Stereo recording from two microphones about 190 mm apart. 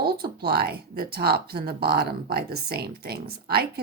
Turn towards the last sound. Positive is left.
turn(degrees=-55)  # may be behind; listen again after turning